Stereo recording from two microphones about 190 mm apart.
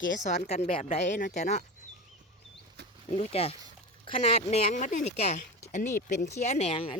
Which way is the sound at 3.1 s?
30° left (ahead or behind).